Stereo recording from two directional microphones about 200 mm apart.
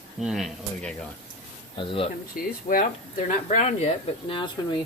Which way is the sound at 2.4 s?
45° left (ahead or behind).